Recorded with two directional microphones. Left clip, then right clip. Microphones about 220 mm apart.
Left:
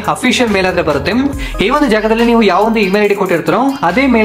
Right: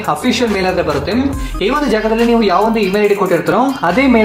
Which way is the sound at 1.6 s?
20° left (ahead or behind).